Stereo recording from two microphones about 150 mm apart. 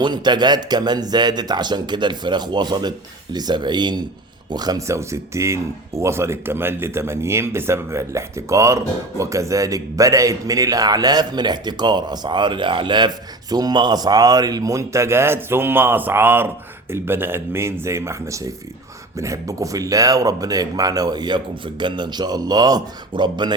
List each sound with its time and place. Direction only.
0.0 s speech: 30° right (ahead or behind)